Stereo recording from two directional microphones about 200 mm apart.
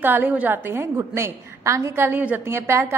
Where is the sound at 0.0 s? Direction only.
10° right (ahead or behind).